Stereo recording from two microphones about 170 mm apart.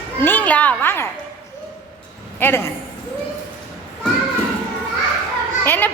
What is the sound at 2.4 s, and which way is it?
Speech, 15° left (ahead or behind).